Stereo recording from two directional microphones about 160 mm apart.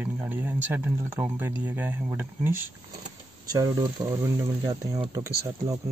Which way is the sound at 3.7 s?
25° right (ahead or behind).